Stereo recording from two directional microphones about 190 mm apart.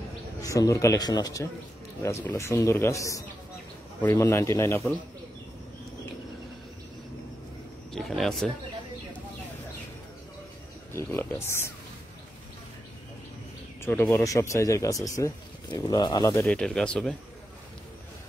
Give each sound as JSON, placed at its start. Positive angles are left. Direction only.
{"t": 0.4, "sound": "speech", "side_deg": 15}
{"t": 7.9, "sound": "a man's voice", "side_deg": 0}
{"t": 10.9, "sound": "speech", "side_deg": 15}
{"t": 13.8, "sound": "speech", "side_deg": 10}
{"t": 16.5, "sound": "speech", "side_deg": 5}